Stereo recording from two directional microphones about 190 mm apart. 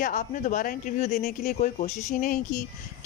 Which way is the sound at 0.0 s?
40° left (ahead or behind).